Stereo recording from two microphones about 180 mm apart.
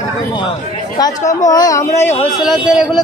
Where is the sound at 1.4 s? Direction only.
20° left (ahead or behind).